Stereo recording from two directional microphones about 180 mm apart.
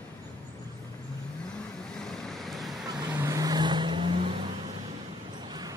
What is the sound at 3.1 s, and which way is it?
Vehicle, 15° right (ahead or behind).